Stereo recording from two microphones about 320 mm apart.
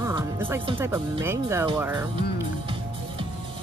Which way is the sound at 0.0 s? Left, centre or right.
Centre.